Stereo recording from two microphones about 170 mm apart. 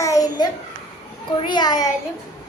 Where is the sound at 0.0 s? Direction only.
20° left (ahead or behind).